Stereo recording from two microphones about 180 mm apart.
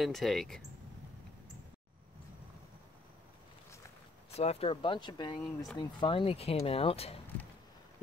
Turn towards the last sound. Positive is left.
turn(degrees=35)  # may be behind; listen again after turning